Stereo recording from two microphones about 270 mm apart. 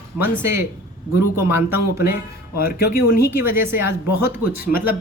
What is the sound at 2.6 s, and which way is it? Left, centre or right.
Speech, left.